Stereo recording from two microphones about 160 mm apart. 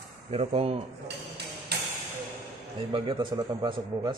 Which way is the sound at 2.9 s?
30° right (ahead or behind).